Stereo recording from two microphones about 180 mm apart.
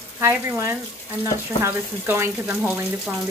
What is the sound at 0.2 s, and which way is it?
Speech, 15° right (ahead or behind).